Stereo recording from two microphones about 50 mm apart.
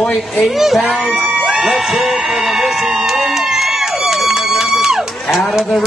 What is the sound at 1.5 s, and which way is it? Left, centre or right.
Music, centre.